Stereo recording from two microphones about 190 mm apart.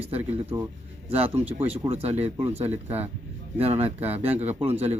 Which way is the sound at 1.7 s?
30° right (ahead or behind).